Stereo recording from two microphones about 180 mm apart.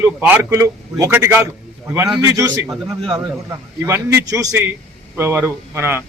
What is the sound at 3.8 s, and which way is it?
A man's voice, 15° right (ahead or behind).